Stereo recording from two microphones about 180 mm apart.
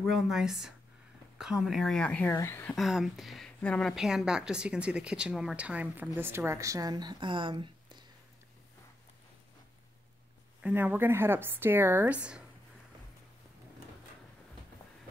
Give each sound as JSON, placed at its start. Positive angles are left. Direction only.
{"t": 0.0, "sound": "speech", "side_deg": 0}
{"t": 2.7, "sound": "speech", "side_deg": 0}
{"t": 10.6, "sound": "speech", "side_deg": -10}